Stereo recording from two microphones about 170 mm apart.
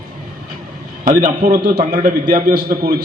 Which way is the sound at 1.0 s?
50° right (ahead or behind).